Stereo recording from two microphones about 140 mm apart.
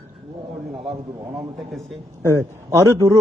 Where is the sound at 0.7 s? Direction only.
Centre (ahead or behind).